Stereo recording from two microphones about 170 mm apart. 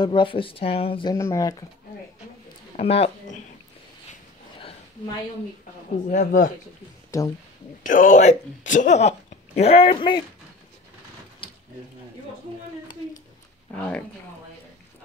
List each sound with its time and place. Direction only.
0.0 s speech: 30° left (ahead or behind)
1.1 s speech: 15° left (ahead or behind)
2.7 s speech: 35° left (ahead or behind)
4.6 s a sound: 30° left (ahead or behind)
6.0 s speech: 50° left (ahead or behind)
7.1 s speech: 20° left (ahead or behind)
7.8 s speech: 50° left (ahead or behind); by 10.2 s 30° left (ahead or behind)